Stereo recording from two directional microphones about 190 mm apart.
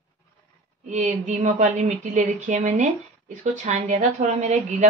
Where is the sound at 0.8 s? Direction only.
35° right (ahead or behind).